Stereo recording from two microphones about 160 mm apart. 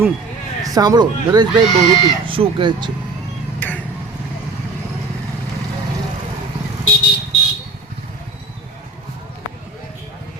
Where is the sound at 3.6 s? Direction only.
10° left (ahead or behind).